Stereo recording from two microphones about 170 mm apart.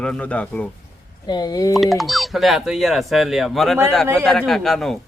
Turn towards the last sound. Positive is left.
turn(degrees=0)  # may be behind; listen again after turning